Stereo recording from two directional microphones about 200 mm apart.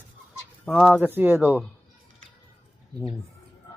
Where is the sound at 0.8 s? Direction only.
10° right (ahead or behind).